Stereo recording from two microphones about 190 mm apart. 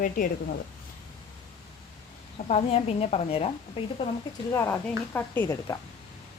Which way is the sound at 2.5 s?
35° left (ahead or behind).